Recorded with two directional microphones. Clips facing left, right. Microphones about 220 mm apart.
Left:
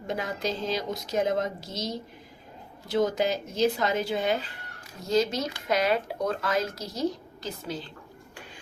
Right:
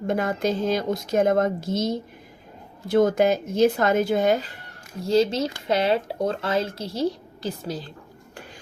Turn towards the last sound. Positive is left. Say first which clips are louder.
# right 5 dB
turn(degrees=-40)  # may be behind; listen again after turning